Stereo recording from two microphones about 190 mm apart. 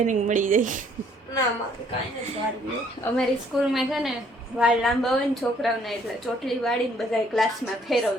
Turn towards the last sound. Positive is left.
turn(degrees=0)  # may be behind; listen again after turning